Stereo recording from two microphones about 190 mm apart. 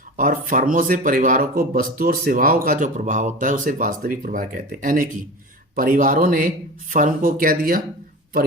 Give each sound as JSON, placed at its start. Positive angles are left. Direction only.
{"t": 0.2, "sound": "speech", "side_deg": -45}